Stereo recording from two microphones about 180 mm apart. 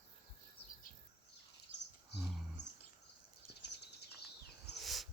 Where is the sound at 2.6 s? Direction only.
80° left.